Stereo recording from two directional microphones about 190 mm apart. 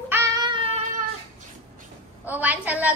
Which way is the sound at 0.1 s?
15° right (ahead or behind).